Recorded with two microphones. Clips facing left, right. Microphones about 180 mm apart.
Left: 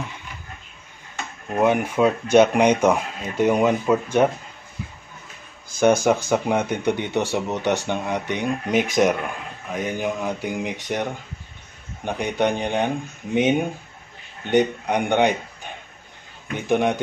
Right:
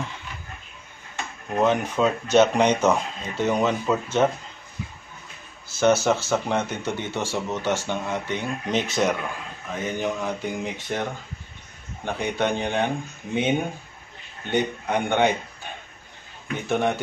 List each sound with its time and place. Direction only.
1.6 s speech: 10° left (ahead or behind)
5.8 s speech: 15° left (ahead or behind)
16.6 s speech: 15° left (ahead or behind)